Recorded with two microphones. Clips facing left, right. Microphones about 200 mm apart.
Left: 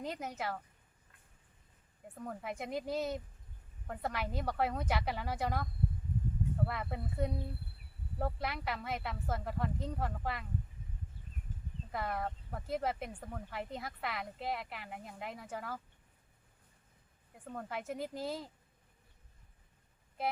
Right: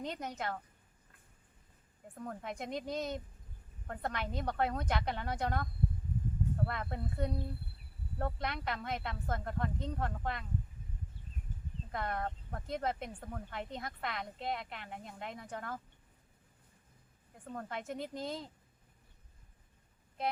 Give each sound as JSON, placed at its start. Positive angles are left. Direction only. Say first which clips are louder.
{"t": 0.0, "sound": "speech", "louder": "even", "side_deg": 5}
{"t": 2.2, "sound": "speech", "louder": "even", "side_deg": 5}
{"t": 6.7, "sound": "speech", "louder": "even", "side_deg": 5}
{"t": 11.9, "sound": "speech", "louder": "even", "side_deg": 5}
{"t": 17.5, "sound": "speech", "louder": "even", "side_deg": 5}